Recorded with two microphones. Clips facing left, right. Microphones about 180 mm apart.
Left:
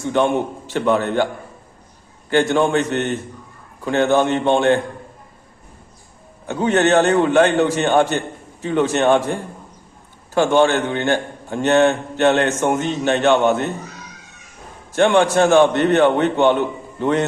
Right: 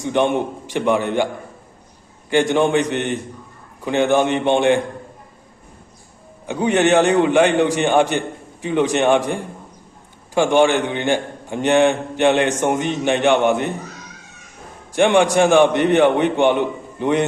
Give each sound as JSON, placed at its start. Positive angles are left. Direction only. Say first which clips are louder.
{"t": 0.0, "sound": "a man's voice", "louder": "even", "side_deg": -15}
{"t": 2.3, "sound": "a man's voice", "louder": "even", "side_deg": -15}
{"t": 6.4, "sound": "a man's voice", "louder": "even", "side_deg": -15}
{"t": 14.9, "sound": "a man's voice", "louder": "even", "side_deg": -15}